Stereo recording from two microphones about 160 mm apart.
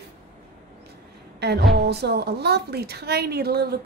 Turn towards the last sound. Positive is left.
turn(degrees=-80)